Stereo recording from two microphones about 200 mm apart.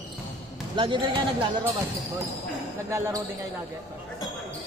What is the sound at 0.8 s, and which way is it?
Speech, 25° right (ahead or behind).